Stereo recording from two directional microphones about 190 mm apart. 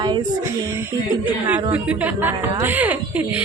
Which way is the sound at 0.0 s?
20° right (ahead or behind).